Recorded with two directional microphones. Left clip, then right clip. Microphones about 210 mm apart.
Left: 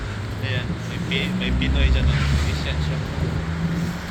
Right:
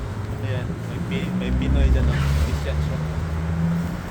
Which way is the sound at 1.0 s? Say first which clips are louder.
Left 5 dB; 45° right (ahead or behind).